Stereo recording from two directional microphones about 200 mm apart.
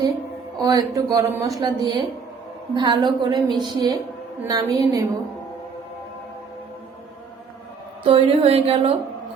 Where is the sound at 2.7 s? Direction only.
20° right (ahead or behind).